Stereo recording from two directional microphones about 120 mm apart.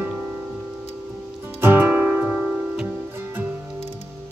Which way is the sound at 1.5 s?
15° right (ahead or behind).